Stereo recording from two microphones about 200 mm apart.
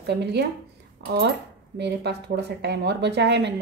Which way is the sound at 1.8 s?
55° right (ahead or behind).